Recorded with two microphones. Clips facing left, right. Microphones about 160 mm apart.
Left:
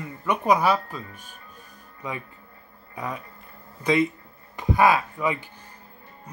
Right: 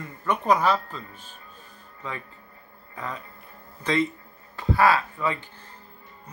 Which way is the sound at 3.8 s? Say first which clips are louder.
Left 3 dB; 10° left (ahead or behind).